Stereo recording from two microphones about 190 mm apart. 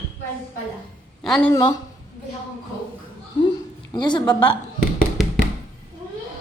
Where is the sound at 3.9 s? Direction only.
25° left (ahead or behind).